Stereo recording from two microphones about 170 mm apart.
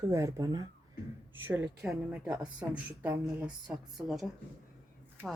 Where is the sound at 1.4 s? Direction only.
10° right (ahead or behind).